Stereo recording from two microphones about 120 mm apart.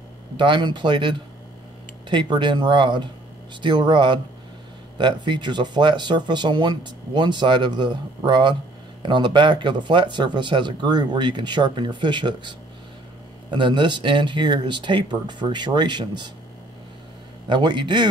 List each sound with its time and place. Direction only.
0.4 s speech: 40° right (ahead or behind)
17.5 s speech: 40° right (ahead or behind)